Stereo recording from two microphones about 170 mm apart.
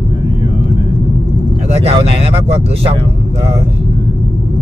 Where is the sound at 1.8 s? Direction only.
35° right (ahead or behind).